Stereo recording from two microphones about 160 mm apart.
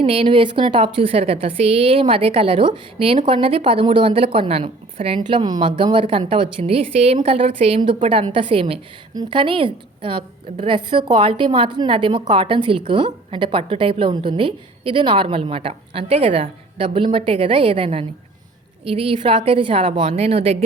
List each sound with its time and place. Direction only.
0.0 s a woman's voice: 35° right (ahead or behind)